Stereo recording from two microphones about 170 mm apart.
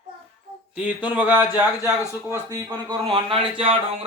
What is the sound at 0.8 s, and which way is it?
Speech, 10° right (ahead or behind).